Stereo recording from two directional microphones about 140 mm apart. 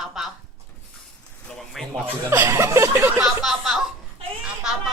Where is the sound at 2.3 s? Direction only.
20° right (ahead or behind).